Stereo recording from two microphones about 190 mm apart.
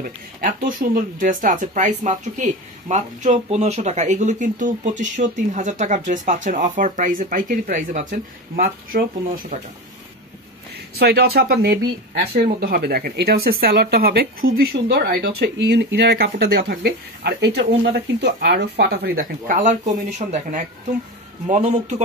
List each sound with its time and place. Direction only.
0.0 s speech: 45° right (ahead or behind)
11.0 s speech: 55° right (ahead or behind); by 22.0 s 35° right (ahead or behind)